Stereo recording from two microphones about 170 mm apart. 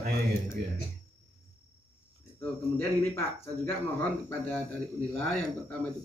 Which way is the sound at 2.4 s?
15° left (ahead or behind).